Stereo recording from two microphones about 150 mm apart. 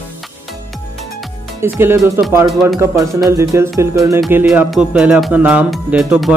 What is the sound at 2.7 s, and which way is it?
Speech, 20° right (ahead or behind).